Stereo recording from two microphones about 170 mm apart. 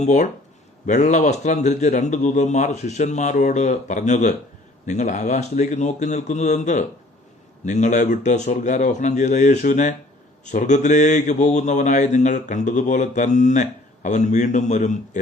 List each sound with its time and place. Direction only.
0.0 s mantra: 45° left (ahead or behind)